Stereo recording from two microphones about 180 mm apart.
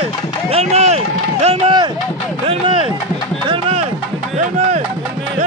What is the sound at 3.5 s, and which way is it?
Music, 35° right (ahead or behind).